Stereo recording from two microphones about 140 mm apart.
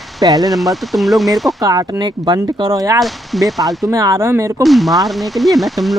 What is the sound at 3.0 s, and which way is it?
Speech, centre (ahead or behind).